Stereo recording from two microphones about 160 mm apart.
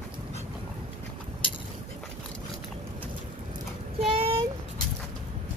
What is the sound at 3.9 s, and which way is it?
Child singing, 35° right (ahead or behind).